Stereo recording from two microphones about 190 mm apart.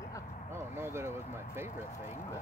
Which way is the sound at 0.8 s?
15° right (ahead or behind).